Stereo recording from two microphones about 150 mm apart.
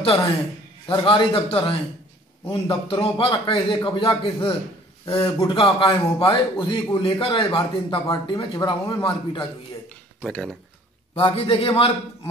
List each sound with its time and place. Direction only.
0.8 s a man's voice: 35° left (ahead or behind)
5.1 s a man's voice: 15° left (ahead or behind)
5.5 s a man's voice: 30° left (ahead or behind)
10.2 s speech: 5° left (ahead or behind)
11.1 s a man's voice: 35° left (ahead or behind)